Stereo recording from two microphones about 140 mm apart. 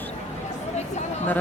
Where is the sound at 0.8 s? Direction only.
55° left (ahead or behind).